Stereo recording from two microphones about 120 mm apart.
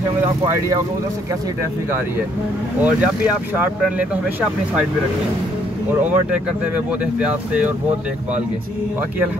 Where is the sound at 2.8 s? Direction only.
10° right (ahead or behind).